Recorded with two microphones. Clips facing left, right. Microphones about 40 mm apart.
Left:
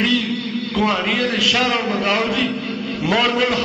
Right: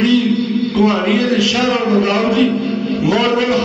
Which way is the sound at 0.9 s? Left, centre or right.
Centre.